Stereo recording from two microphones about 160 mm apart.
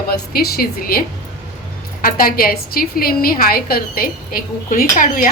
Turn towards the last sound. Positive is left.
turn(degrees=55)  # may be behind; listen again after turning